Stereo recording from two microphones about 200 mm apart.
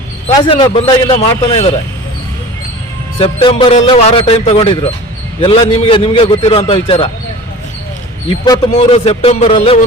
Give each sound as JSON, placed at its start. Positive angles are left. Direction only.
{"t": 0.4, "sound": "a man's voice", "side_deg": 25}
{"t": 3.2, "sound": "a man's voice", "side_deg": 30}
{"t": 8.3, "sound": "a man's voice", "side_deg": 25}